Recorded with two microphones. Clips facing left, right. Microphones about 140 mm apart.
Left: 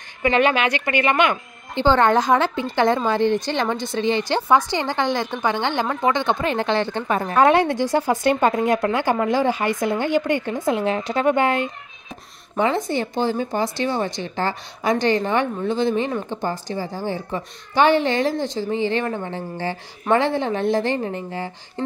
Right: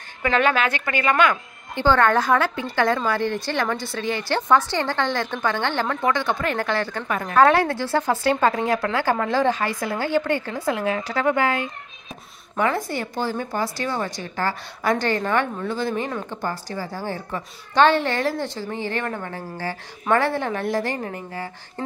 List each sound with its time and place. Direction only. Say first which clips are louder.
1.0 s speech: right 2 dB; 20° left (ahead or behind)
7.3 s a woman's voice: even; 15° left (ahead or behind)